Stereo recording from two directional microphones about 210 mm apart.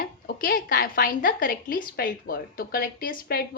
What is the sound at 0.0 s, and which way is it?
A woman's voice, 45° left (ahead or behind).